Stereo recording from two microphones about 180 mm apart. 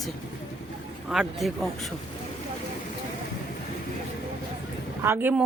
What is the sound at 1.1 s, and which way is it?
Speech, centre (ahead or behind).